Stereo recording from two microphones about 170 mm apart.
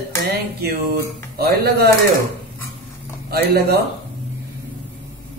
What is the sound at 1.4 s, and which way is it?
Mantra, 65° right (ahead or behind).